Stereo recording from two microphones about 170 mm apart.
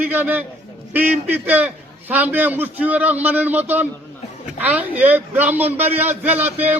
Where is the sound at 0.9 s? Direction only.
10° right (ahead or behind).